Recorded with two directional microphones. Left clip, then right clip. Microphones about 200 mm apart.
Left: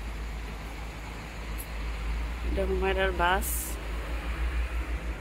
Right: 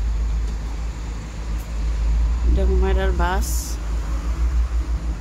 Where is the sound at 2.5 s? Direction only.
5° right (ahead or behind).